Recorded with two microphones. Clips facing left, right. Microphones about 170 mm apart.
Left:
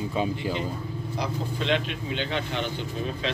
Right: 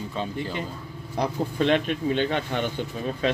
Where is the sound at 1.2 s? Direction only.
50° right (ahead or behind).